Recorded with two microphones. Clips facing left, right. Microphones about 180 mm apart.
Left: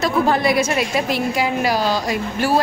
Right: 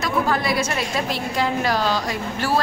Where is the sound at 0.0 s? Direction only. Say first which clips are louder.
Left 5 dB; 25° left (ahead or behind).